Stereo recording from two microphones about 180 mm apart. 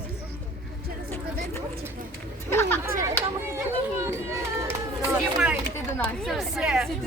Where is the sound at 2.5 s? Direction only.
15° left (ahead or behind).